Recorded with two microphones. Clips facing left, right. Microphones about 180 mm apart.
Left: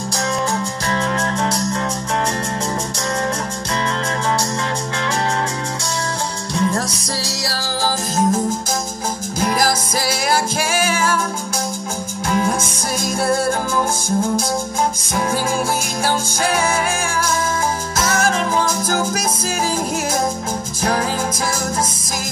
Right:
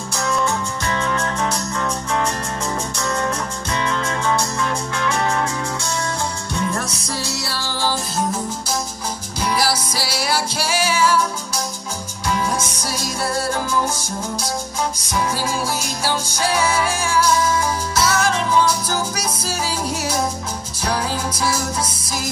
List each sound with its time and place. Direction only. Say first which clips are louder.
0.1 s music: right 1 dB; 35° left (ahead or behind)
6.5 s music: left 6 dB; 35° left (ahead or behind)
9.4 s music: left 2 dB; 50° left (ahead or behind)
12.4 s music: left 6 dB; 50° left (ahead or behind)